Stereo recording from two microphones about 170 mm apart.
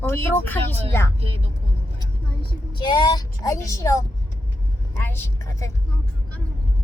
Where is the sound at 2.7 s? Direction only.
25° left (ahead or behind).